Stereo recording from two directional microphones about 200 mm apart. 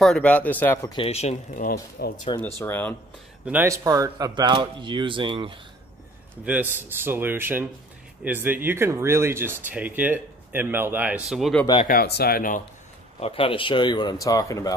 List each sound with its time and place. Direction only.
0.0 s speech: 5° left (ahead or behind)
0.9 s speech: 30° left (ahead or behind); by 2.1 s 50° left (ahead or behind)
2.6 s speech: 10° left (ahead or behind)
3.4 s speech: 10° right (ahead or behind)
6.4 s speech: 10° right (ahead or behind)
11.6 s speech: 25° left (ahead or behind)
11.9 s speech: 50° left (ahead or behind)
13.2 s speech: 25° left (ahead or behind)